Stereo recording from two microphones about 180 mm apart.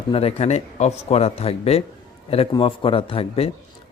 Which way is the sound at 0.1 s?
35° left (ahead or behind).